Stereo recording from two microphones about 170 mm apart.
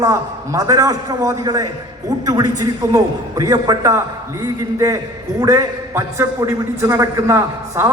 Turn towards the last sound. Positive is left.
turn(degrees=-15)  # may be behind; listen again after turning